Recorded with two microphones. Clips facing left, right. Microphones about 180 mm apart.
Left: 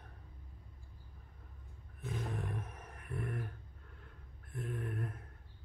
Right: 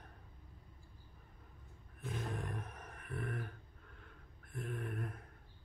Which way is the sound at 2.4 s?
5° left (ahead or behind).